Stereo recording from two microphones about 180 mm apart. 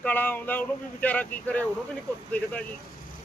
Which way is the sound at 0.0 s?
10° left (ahead or behind).